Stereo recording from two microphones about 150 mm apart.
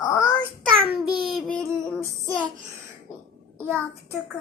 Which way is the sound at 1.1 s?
Centre (ahead or behind).